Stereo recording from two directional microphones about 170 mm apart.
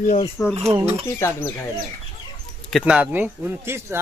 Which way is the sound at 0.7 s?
15° right (ahead or behind).